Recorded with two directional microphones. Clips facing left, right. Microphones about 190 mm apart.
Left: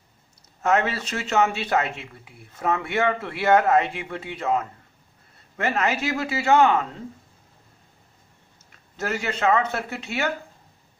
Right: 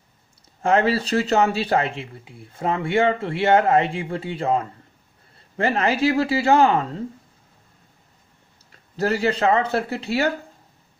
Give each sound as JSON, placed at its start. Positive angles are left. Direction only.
{"t": 0.6, "sound": "speech", "side_deg": -30}
{"t": 8.9, "sound": "speech", "side_deg": -35}